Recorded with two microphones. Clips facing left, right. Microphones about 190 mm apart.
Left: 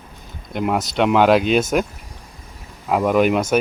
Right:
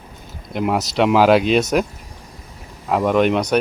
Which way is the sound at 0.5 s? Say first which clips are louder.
Right 1 dB; centre (ahead or behind).